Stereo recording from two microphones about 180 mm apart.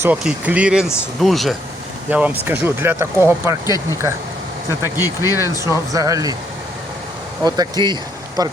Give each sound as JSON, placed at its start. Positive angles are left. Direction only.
{"t": 0.0, "sound": "speech", "side_deg": -10}
{"t": 4.9, "sound": "speech", "side_deg": 20}
{"t": 5.9, "sound": "speech", "side_deg": -20}
{"t": 7.4, "sound": "speech", "side_deg": -20}